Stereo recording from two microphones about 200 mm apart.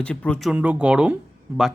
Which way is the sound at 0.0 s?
5° left (ahead or behind).